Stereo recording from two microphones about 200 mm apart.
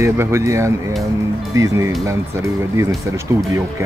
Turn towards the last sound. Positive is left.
turn(degrees=-15)  # may be behind; listen again after turning